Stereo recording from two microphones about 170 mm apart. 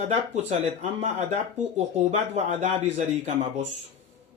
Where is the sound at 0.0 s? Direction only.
40° right (ahead or behind).